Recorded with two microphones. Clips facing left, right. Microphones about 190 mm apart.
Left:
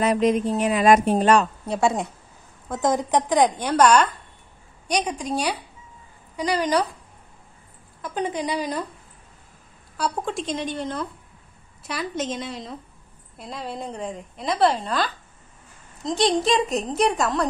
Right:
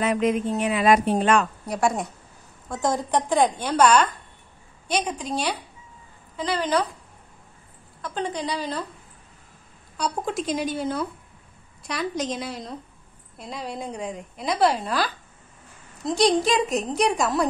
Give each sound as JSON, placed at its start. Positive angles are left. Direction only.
{"t": 0.0, "sound": "a woman's voice", "side_deg": 40}
{"t": 6.3, "sound": "a woman's voice", "side_deg": 15}
{"t": 8.0, "sound": "a woman's voice", "side_deg": 20}
{"t": 9.9, "sound": "a woman's voice", "side_deg": 0}